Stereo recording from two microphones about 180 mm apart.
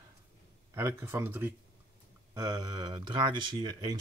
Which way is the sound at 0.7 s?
15° right (ahead or behind).